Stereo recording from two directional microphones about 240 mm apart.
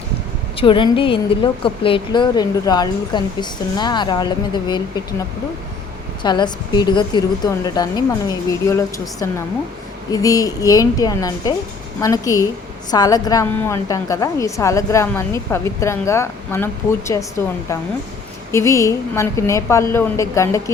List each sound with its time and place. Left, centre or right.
0.5 s speech: left
6.2 s a woman's voice: centre
18.5 s a woman's voice: centre